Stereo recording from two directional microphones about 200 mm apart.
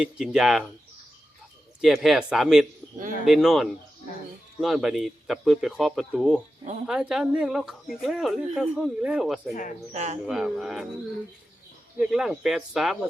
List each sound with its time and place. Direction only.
0.0 s speech: 5° right (ahead or behind)
1.8 s speech: centre (ahead or behind)
9.9 s speech: 35° right (ahead or behind)
10.2 s speech: centre (ahead or behind)
11.9 s speech: 5° right (ahead or behind)